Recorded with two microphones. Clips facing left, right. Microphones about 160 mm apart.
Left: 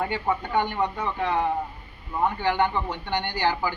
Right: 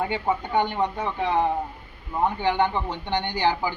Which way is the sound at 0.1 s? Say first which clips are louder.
Right 1 dB; 20° right (ahead or behind).